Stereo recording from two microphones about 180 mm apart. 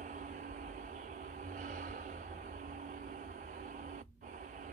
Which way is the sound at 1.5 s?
45° right (ahead or behind).